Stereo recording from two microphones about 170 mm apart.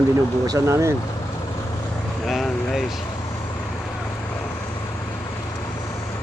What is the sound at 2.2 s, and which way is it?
Vehicle, centre (ahead or behind).